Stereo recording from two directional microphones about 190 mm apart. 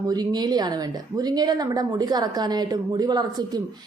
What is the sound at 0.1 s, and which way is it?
A woman's voice, 20° right (ahead or behind).